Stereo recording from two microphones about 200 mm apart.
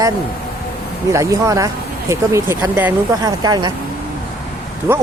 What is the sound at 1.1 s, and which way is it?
Speech, 15° right (ahead or behind).